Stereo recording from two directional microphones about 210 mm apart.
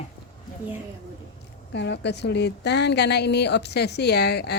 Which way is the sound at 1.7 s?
55° left (ahead or behind).